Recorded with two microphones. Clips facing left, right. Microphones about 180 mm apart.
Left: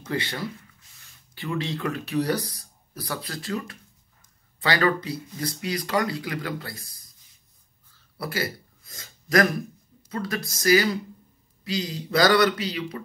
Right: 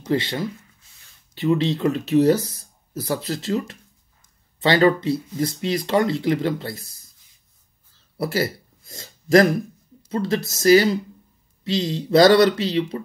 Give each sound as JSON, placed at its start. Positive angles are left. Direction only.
{"t": 0.0, "sound": "speech", "side_deg": -20}
{"t": 8.4, "sound": "a sound", "side_deg": -30}
{"t": 10.0, "sound": "speech", "side_deg": -25}